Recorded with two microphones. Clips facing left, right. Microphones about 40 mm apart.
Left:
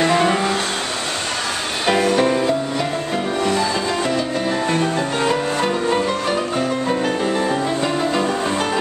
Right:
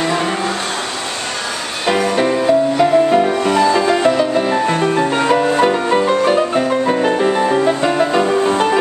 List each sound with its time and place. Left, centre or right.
0.0 s vehicle: centre
1.9 s music: centre
2.8 s music: right